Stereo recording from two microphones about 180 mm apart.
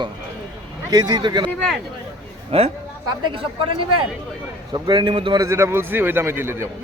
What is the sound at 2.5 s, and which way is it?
A man's voice, 35° right (ahead or behind).